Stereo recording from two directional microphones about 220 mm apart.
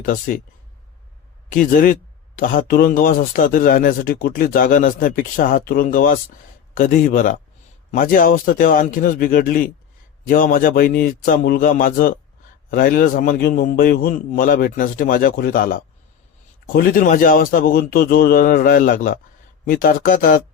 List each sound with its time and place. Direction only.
0.0 s speech: 40° left (ahead or behind)
1.5 s speech: 40° left (ahead or behind)